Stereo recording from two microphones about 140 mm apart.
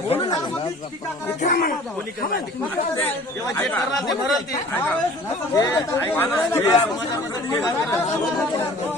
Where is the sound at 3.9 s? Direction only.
Centre (ahead or behind).